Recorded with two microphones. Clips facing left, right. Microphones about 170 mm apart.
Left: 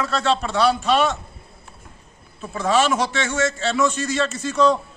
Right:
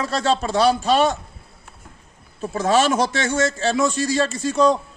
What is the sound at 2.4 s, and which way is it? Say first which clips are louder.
A man's voice: right 1 dB; 40° right (ahead or behind).